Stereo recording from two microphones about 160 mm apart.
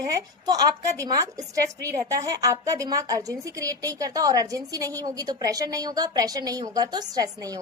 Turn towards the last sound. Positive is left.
turn(degrees=-20)  # may be behind; listen again after turning